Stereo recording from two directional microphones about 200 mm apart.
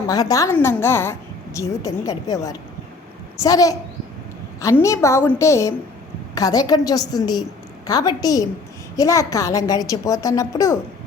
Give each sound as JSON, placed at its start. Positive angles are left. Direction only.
{"t": 0.1, "sound": "a woman's voice", "side_deg": 20}